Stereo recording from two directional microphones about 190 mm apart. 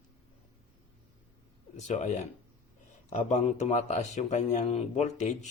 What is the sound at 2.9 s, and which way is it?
A man's voice, 40° left (ahead or behind).